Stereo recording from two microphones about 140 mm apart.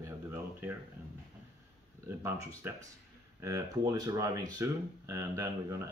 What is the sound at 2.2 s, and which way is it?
Speech, 15° right (ahead or behind).